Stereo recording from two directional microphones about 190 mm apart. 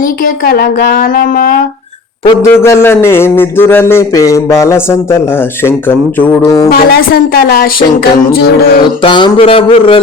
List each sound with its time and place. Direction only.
0.4 s speech: 55° left (ahead or behind)
2.5 s a man's voice: 10° left (ahead or behind)
6.7 s speech: 50° left (ahead or behind)
9.0 s speech: 25° left (ahead or behind)